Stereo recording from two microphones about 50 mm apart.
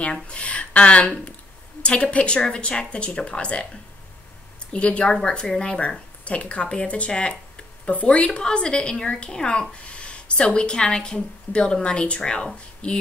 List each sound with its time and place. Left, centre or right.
0.0 s speech: left
4.7 s speech: left